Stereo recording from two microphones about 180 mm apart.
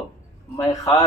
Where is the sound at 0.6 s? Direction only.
20° left (ahead or behind).